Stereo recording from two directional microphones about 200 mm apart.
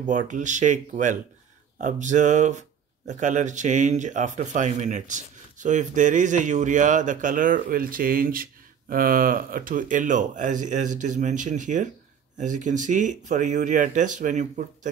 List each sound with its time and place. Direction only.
0.0 s a man's voice: 40° right (ahead or behind)